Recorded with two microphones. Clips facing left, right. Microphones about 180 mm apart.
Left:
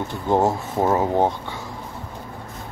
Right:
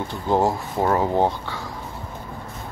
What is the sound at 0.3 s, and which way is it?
Speech, 20° left (ahead or behind).